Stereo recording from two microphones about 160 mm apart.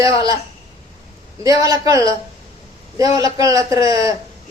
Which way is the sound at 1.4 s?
20° right (ahead or behind).